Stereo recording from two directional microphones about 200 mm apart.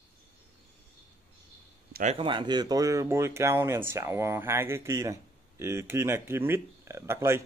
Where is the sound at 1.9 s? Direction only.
40° right (ahead or behind).